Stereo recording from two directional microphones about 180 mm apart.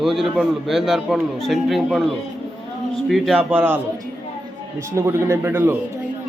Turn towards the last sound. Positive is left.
turn(degrees=-10)  # may be behind; listen again after turning